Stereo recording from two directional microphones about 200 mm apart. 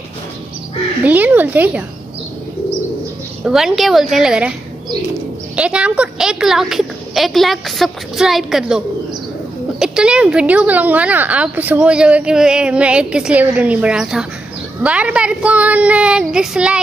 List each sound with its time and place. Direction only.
1.0 s speech: 10° right (ahead or behind)
3.4 s a woman's voice: centre (ahead or behind)
5.6 s a woman's voice: 5° right (ahead or behind)